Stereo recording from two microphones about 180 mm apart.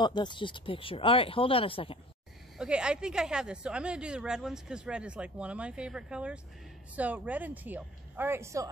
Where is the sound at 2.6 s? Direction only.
5° right (ahead or behind).